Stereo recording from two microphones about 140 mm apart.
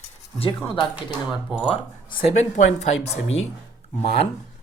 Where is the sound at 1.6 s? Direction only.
40° left (ahead or behind).